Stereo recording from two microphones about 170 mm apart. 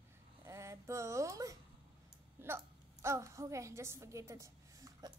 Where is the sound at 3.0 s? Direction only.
15° right (ahead or behind).